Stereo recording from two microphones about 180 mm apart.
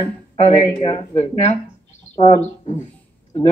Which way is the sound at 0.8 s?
30° left (ahead or behind).